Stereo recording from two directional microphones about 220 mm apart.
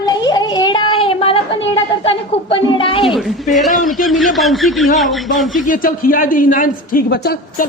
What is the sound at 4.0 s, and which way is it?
A man's voice, centre (ahead or behind).